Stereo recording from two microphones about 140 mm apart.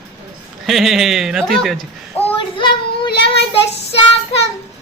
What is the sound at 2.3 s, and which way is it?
Child singing, 35° left (ahead or behind).